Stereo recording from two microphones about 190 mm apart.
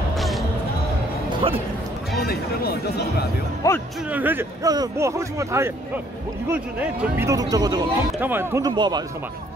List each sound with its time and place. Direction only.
2.1 s speech: 55° left (ahead or behind)
3.6 s speech: 15° left (ahead or behind)
4.1 s speech: 10° right (ahead or behind)